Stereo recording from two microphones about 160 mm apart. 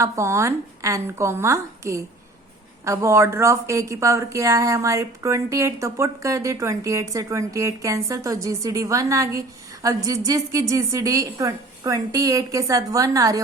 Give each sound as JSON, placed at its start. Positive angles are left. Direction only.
{"t": 0.0, "sound": "a woman's voice", "side_deg": -20}